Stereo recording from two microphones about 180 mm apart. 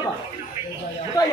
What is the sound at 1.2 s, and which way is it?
Speech, 20° left (ahead or behind).